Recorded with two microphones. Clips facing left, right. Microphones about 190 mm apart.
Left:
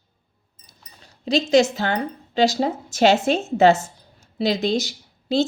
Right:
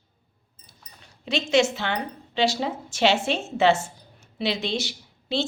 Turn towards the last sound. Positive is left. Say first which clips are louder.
# left 7 dB
turn(degrees=40)  # may be behind; listen again after turning